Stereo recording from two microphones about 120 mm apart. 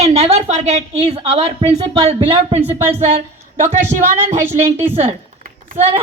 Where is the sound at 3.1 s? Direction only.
70° right (ahead or behind).